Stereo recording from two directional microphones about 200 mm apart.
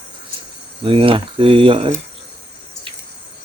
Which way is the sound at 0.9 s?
25° right (ahead or behind).